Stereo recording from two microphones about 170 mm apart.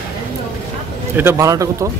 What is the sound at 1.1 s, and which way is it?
Speech, 15° right (ahead or behind).